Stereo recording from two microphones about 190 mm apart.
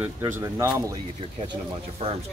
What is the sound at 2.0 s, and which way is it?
Speech, 30° right (ahead or behind).